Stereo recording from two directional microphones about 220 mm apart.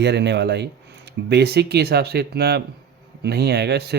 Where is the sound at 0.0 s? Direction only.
50° right (ahead or behind).